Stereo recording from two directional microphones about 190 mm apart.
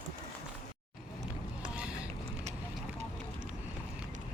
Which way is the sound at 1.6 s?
5° right (ahead or behind).